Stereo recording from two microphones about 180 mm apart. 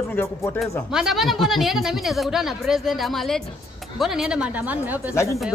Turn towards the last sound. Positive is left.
turn(degrees=15)  # may be behind; listen again after turning